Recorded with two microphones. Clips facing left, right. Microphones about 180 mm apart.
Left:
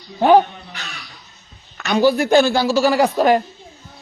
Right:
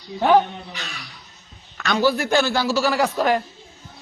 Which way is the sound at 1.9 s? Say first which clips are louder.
Left 5 dB; 15° left (ahead or behind).